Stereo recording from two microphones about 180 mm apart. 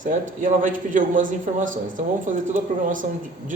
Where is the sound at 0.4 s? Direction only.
45° right (ahead or behind).